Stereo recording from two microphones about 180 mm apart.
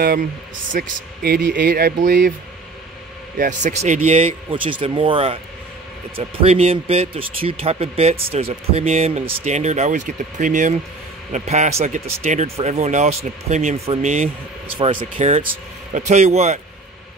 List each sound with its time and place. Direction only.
0.9 s speech: 55° right (ahead or behind)
3.3 s speech: 45° right (ahead or behind)
14.8 s speech: 30° right (ahead or behind)